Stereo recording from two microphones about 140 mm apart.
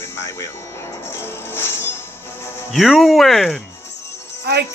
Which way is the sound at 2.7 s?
Centre (ahead or behind).